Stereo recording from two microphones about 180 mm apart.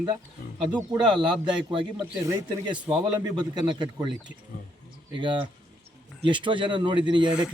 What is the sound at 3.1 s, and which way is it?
Speech, 20° right (ahead or behind).